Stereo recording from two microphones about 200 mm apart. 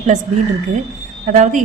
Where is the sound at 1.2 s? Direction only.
35° right (ahead or behind).